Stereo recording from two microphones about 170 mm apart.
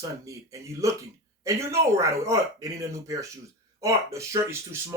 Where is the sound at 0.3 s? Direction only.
20° right (ahead or behind).